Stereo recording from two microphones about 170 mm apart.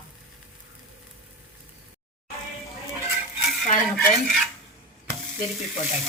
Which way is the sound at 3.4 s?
Centre (ahead or behind).